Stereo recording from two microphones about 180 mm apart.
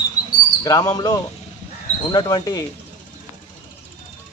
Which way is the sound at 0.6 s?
20° left (ahead or behind).